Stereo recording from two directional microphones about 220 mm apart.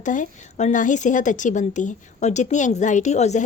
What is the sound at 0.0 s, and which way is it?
Speech, 35° left (ahead or behind).